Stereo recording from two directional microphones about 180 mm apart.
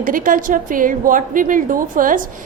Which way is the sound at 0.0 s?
50° right (ahead or behind).